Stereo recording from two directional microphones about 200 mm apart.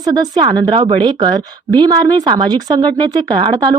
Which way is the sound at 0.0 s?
20° right (ahead or behind).